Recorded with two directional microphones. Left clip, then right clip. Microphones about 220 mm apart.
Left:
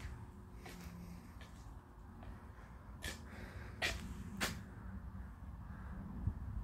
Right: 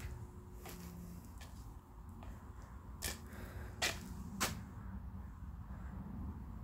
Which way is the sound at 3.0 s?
Centre (ahead or behind).